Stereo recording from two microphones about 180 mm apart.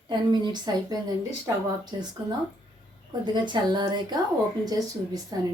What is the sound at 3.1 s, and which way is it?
A woman's voice, 25° right (ahead or behind).